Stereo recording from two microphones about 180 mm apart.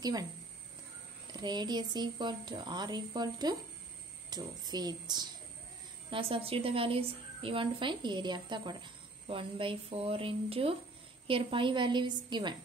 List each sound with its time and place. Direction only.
0.0 s a woman's voice: 20° right (ahead or behind)